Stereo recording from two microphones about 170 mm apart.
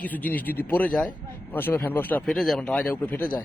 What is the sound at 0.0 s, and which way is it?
Speech, 10° left (ahead or behind).